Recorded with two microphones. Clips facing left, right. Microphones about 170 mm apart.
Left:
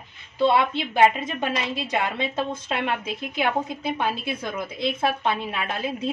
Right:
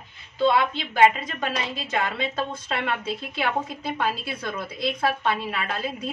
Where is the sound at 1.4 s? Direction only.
15° left (ahead or behind).